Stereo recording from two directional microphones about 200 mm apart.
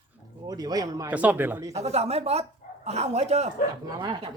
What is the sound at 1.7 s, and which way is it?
A woman's voice, 30° right (ahead or behind).